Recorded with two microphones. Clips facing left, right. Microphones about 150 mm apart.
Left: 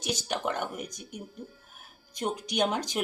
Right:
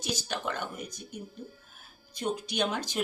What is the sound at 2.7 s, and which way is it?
Speech, 15° left (ahead or behind).